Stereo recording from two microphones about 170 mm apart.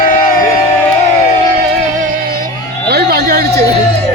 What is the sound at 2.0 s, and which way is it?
Music, 60° right (ahead or behind).